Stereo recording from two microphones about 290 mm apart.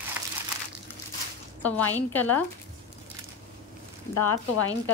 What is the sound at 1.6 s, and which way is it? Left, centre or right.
Speech, centre.